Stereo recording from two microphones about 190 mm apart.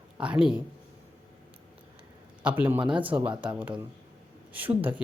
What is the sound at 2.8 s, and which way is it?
Speech, 25° right (ahead or behind).